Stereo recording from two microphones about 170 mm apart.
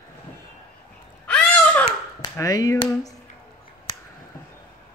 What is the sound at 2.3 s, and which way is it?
Speech, 20° left (ahead or behind).